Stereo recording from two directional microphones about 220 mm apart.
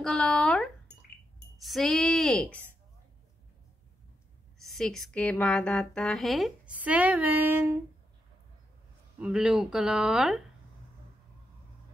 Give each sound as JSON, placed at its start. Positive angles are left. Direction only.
{"t": 0.0, "sound": "speech", "side_deg": 0}
{"t": 4.6, "sound": "speech", "side_deg": 0}
{"t": 9.2, "sound": "speech", "side_deg": -5}